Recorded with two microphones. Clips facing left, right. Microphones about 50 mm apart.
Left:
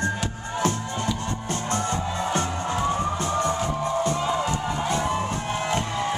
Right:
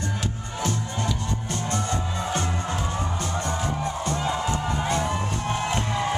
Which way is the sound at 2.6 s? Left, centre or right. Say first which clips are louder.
Left 4 dB; centre.